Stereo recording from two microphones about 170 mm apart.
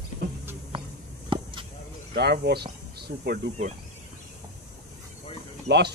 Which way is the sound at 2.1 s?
75° right (ahead or behind).